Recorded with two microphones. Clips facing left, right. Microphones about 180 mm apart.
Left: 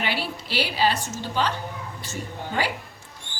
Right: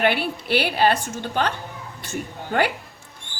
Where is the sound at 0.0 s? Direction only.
55° right (ahead or behind).